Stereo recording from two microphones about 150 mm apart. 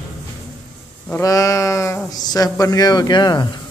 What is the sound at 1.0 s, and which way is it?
Speech, 20° left (ahead or behind).